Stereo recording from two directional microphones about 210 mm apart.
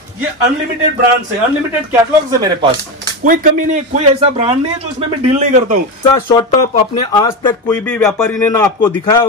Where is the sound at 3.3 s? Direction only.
40° right (ahead or behind).